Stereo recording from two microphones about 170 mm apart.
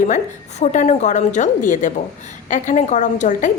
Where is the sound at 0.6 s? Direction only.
45° left (ahead or behind).